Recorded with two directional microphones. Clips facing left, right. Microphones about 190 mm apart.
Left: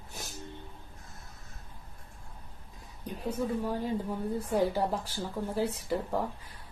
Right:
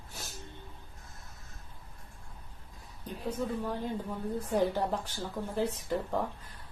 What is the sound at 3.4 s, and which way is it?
Speech, 10° left (ahead or behind).